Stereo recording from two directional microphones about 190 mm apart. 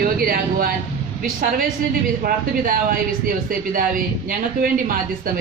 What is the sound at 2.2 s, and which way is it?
A woman's voice, 50° right (ahead or behind).